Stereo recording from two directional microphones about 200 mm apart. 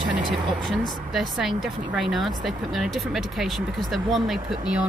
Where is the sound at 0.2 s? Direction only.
25° right (ahead or behind).